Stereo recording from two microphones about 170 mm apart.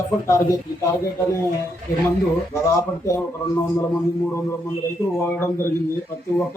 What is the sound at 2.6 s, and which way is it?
Speech, 15° left (ahead or behind).